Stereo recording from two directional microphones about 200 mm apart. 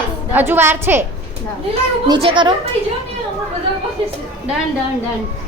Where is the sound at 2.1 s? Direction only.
25° right (ahead or behind).